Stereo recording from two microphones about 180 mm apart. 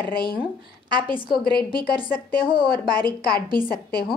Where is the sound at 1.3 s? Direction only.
55° left (ahead or behind).